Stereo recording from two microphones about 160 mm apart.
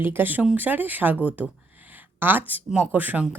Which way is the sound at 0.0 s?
15° right (ahead or behind).